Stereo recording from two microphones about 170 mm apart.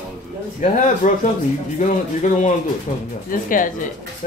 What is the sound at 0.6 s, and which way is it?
A woman's voice, 45° left (ahead or behind).